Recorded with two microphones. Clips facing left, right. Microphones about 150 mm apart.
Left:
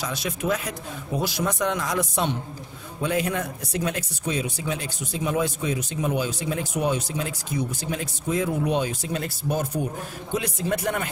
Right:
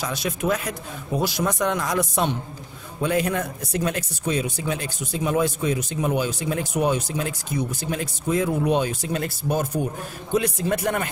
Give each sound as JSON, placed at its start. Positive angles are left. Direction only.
{"t": 0.0, "sound": "speech", "side_deg": -50}